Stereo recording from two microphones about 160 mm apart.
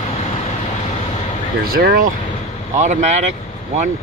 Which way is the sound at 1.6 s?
70° right (ahead or behind).